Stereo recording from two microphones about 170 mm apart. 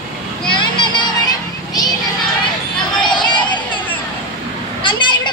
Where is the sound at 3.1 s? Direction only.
25° left (ahead or behind).